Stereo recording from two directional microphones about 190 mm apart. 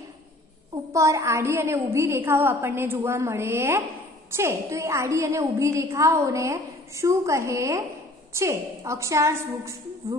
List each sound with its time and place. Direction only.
0.9 s a woman's voice: 15° right (ahead or behind)